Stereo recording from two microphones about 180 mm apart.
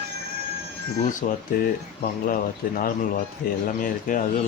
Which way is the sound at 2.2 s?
50° left (ahead or behind).